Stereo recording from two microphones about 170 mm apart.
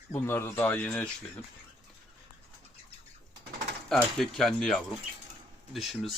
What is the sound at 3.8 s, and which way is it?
Speech, centre (ahead or behind).